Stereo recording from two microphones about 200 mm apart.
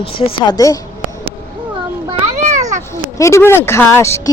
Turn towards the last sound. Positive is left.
turn(degrees=15)  # may be behind; listen again after turning